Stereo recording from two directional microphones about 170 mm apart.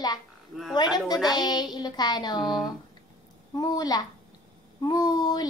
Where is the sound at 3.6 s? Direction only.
20° left (ahead or behind).